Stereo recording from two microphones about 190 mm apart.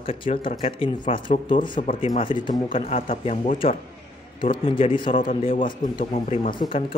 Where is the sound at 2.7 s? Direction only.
40° left (ahead or behind).